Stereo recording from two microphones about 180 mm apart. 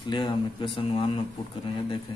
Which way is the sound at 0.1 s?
25° left (ahead or behind).